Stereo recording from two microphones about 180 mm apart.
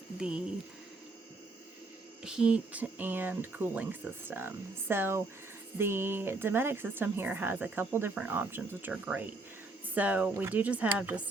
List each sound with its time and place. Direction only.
0.2 s speech: 5° right (ahead or behind)
2.2 s speech: 5° right (ahead or behind)